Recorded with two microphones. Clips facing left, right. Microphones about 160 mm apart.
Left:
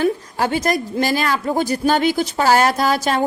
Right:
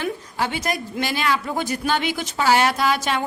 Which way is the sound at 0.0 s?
45° left (ahead or behind).